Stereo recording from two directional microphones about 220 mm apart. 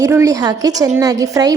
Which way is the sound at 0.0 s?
15° right (ahead or behind).